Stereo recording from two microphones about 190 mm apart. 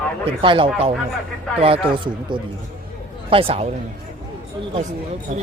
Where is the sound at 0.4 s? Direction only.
25° right (ahead or behind).